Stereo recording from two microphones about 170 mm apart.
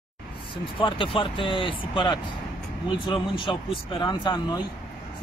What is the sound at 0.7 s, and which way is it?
Speech, 30° left (ahead or behind).